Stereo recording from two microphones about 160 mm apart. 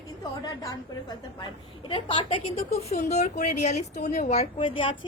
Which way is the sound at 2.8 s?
45° left (ahead or behind).